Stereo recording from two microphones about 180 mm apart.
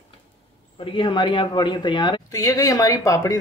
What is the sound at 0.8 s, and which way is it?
Speech, 30° left (ahead or behind).